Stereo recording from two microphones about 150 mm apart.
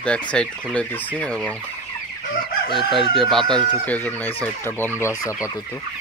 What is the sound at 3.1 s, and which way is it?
Speech, centre (ahead or behind).